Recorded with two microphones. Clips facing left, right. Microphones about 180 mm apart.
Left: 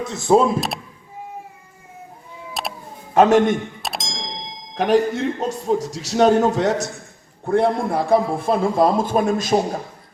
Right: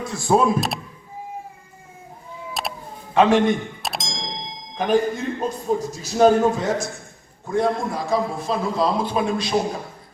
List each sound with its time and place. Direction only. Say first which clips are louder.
0.0 s speech: left 3 dB; 20° left (ahead or behind)
2.5 s a sound: even; centre (ahead or behind)
3.2 s a man's voice: left 2 dB; 45° left (ahead or behind)
3.8 s clang: even; centre (ahead or behind)
4.8 s a man's voice: left 3 dB; 80° left
7.4 s a man's voice: left 3 dB; 60° left (ahead or behind); by 9.6 s 45° left (ahead or behind)